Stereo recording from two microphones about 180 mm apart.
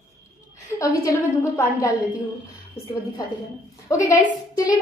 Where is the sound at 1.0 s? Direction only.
15° left (ahead or behind).